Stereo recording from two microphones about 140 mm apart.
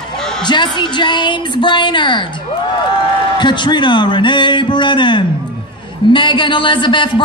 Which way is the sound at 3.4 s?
35° left (ahead or behind).